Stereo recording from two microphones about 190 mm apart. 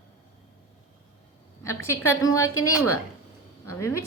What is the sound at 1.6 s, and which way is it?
Speech, 15° left (ahead or behind).